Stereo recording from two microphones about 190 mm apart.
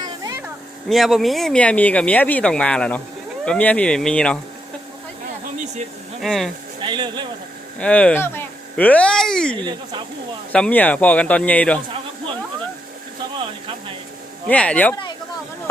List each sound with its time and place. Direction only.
0.0 s a sound: 20° right (ahead or behind)
0.9 s speech: centre (ahead or behind)
6.2 s speech: centre (ahead or behind)
6.8 s speech: 25° right (ahead or behind)
7.8 s speech: 5° left (ahead or behind)
9.6 s speech: 25° right (ahead or behind)
10.5 s speech: 5° left (ahead or behind)
14.4 s speech: 5° left (ahead or behind)